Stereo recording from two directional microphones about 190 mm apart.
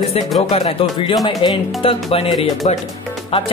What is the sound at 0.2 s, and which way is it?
Speech, 30° left (ahead or behind).